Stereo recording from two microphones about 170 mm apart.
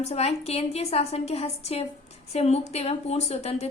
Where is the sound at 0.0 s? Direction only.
40° left (ahead or behind).